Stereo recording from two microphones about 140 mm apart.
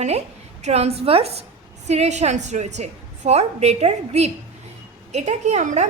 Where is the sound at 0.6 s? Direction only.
50° right (ahead or behind).